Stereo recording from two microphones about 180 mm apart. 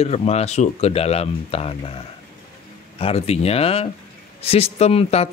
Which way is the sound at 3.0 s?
35° left (ahead or behind).